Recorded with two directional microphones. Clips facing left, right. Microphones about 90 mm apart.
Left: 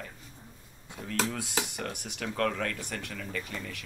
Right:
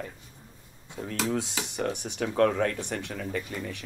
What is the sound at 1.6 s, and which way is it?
Speech, 30° right (ahead or behind).